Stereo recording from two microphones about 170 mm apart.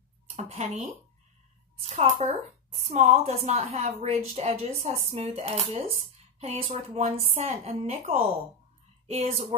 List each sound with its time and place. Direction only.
0.4 s speech: 40° right (ahead or behind)